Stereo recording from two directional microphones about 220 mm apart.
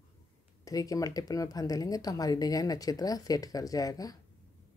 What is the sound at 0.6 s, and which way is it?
Speech, 15° left (ahead or behind).